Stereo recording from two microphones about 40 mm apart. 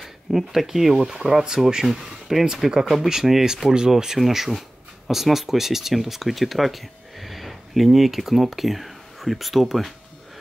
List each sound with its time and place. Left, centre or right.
0.0 s speech: centre
3.6 s speech: centre
3.9 s speech: centre